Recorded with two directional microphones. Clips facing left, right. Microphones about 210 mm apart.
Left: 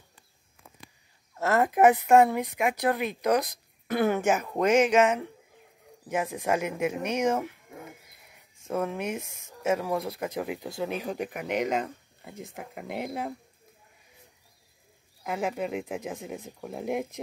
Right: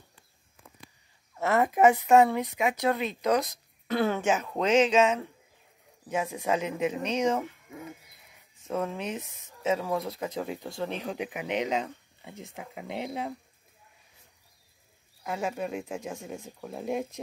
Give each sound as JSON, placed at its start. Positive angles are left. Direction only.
{"t": 1.3, "sound": "a woman's voice", "side_deg": 5}
{"t": 1.7, "sound": "speech", "side_deg": 15}
{"t": 8.6, "sound": "speech", "side_deg": 10}
{"t": 15.2, "sound": "speech", "side_deg": 10}